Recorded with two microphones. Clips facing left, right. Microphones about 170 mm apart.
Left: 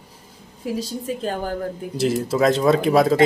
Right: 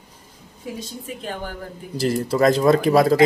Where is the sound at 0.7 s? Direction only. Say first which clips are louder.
Left 7 dB; 40° left (ahead or behind).